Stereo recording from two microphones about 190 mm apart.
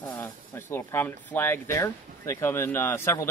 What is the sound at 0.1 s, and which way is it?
Speech, 10° left (ahead or behind).